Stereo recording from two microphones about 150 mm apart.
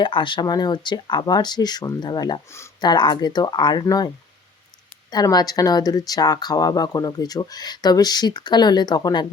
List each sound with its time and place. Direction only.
0.0 s speech: 35° left (ahead or behind)
5.1 s speech: 25° left (ahead or behind)